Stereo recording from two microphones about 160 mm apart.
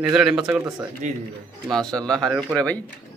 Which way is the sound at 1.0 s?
50° right (ahead or behind).